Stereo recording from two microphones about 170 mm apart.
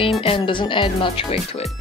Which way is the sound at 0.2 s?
30° left (ahead or behind).